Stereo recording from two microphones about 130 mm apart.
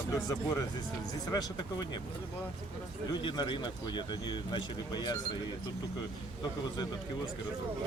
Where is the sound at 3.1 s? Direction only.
35° left (ahead or behind).